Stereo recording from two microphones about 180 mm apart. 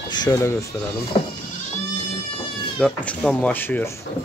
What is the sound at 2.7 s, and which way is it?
Speech, 5° left (ahead or behind).